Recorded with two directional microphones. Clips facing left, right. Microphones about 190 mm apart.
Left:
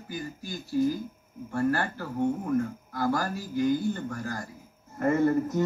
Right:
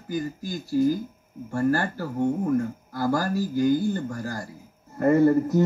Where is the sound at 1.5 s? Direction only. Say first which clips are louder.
Right 3 dB; 40° right (ahead or behind).